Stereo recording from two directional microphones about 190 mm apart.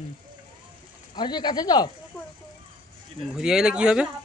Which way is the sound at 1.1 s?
20° left (ahead or behind).